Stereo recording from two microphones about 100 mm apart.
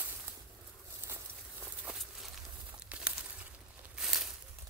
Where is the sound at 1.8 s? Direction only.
Centre (ahead or behind).